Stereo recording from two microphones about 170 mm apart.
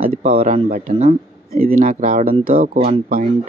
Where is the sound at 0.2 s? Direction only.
35° right (ahead or behind).